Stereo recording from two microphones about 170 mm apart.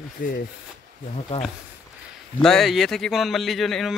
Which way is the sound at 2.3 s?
5° left (ahead or behind).